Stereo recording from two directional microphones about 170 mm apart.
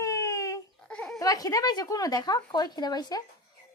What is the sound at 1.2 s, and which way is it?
A woman's voice, 20° left (ahead or behind).